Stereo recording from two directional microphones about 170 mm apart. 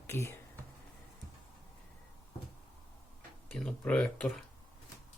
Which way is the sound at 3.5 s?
10° left (ahead or behind).